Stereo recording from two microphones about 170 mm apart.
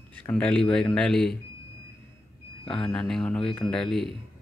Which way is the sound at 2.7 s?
5° left (ahead or behind).